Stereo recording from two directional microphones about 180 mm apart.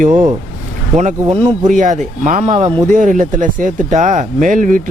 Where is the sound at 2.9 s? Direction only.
45° right (ahead or behind).